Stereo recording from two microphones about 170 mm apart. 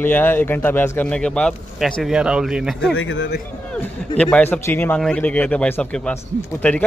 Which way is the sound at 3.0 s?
90° left.